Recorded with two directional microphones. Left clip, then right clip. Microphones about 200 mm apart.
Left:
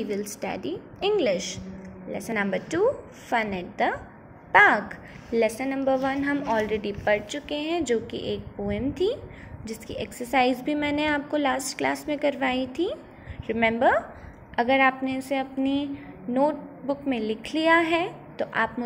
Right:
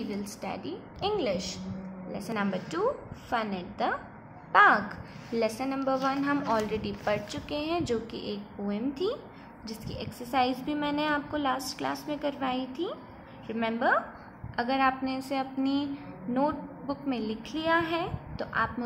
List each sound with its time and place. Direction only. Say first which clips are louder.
0.1 s a woman's voice: left 6 dB; 15° left (ahead or behind)
17.1 s a woman's voice: left 6 dB; 10° left (ahead or behind)